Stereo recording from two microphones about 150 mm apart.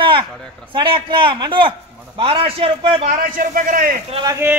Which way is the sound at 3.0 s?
60° right (ahead or behind).